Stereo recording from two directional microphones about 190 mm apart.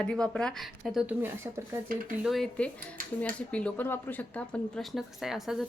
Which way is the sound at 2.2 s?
Centre (ahead or behind).